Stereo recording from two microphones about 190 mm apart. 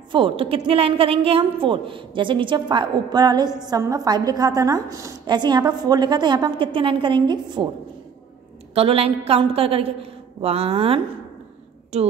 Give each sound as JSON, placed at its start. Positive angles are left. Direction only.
{"t": 0.1, "sound": "a woman's voice", "side_deg": -25}
{"t": 8.7, "sound": "a woman's voice", "side_deg": -30}